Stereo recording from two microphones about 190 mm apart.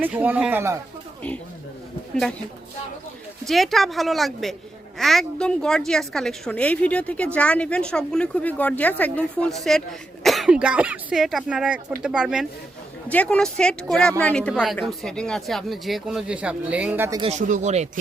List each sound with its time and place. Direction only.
0.0 s speech: 10° right (ahead or behind)
3.4 s speech: centre (ahead or behind)
13.1 s speech: 5° left (ahead or behind); by 17.2 s 10° right (ahead or behind)
17.2 s speech: 35° right (ahead or behind)